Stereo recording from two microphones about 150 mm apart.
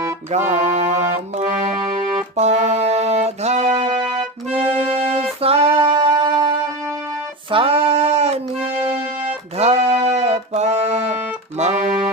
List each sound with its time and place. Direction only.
0.3 s music: 50° right (ahead or behind)
3.8 s music: 35° right (ahead or behind)
7.5 s music: 40° right (ahead or behind)